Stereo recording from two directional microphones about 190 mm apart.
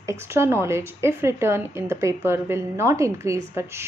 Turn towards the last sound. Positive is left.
turn(degrees=-15)  # may be behind; listen again after turning